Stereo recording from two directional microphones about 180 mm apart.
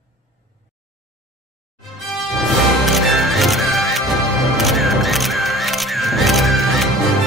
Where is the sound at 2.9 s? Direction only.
Centre (ahead or behind).